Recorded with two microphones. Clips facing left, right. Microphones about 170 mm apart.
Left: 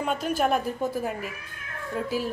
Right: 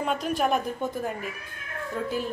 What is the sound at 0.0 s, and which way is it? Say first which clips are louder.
Speech: left 1 dB; centre (ahead or behind).